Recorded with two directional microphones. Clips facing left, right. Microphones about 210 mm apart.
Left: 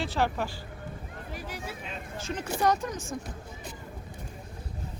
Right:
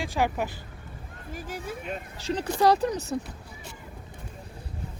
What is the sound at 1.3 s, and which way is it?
Speech, 50° right (ahead or behind).